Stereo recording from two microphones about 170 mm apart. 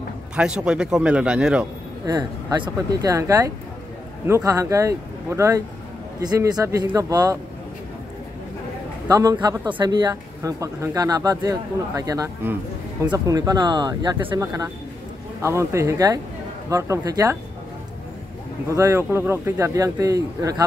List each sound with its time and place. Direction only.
0.4 s a man's voice: 5° right (ahead or behind)
2.0 s speech: 25° right (ahead or behind)
9.0 s speech: 20° right (ahead or behind)
18.7 s speech: 15° right (ahead or behind)